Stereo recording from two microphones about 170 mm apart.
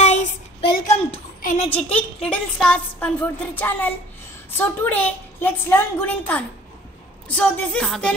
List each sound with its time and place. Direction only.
0.0 s child singing: 45° left (ahead or behind)
0.8 s a sound: 40° left (ahead or behind)
1.4 s a woman's voice: 45° left (ahead or behind)
1.8 s a woman's voice: 10° left (ahead or behind)